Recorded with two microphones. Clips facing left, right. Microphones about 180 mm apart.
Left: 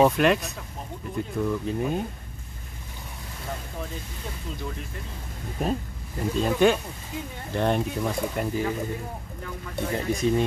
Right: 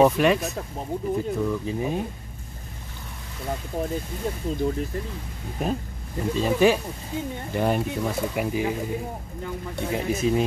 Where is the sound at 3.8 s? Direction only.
35° right (ahead or behind).